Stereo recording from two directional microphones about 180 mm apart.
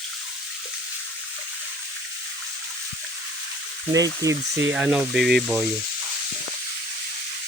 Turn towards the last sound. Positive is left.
turn(degrees=-5)  # may be behind; listen again after turning